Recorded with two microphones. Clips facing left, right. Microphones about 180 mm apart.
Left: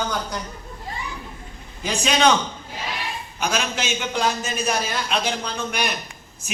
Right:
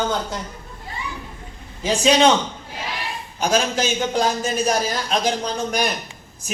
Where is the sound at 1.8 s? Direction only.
30° right (ahead or behind).